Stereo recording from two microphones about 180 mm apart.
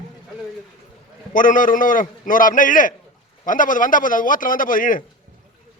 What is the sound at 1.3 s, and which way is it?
A man's voice, 50° left (ahead or behind).